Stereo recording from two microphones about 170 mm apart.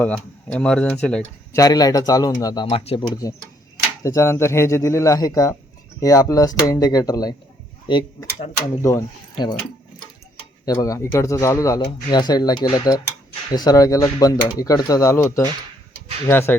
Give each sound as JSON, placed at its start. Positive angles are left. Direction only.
{"t": 0.0, "sound": "speech", "side_deg": 5}
{"t": 1.5, "sound": "speech", "side_deg": 20}
{"t": 2.6, "sound": "speech", "side_deg": 35}
{"t": 3.2, "sound": "speech", "side_deg": 20}
{"t": 10.7, "sound": "speech", "side_deg": 20}